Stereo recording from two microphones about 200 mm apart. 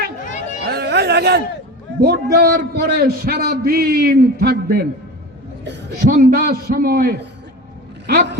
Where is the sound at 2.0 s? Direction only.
50° right (ahead or behind).